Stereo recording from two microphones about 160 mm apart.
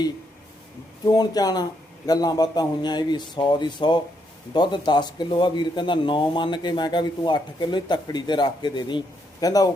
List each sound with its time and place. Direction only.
1.1 s speech: 25° left (ahead or behind)